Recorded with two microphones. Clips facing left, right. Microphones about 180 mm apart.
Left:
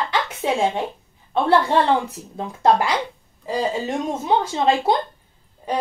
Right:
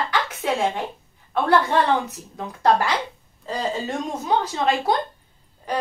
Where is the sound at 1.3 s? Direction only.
25° left (ahead or behind).